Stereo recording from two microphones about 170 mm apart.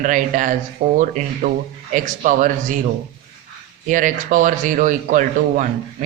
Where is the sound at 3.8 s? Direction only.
50° right (ahead or behind).